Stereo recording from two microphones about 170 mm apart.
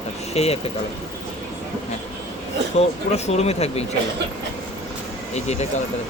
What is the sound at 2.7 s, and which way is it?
Speech, 40° left (ahead or behind).